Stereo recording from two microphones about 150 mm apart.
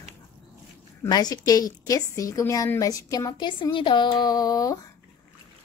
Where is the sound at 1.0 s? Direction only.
25° left (ahead or behind).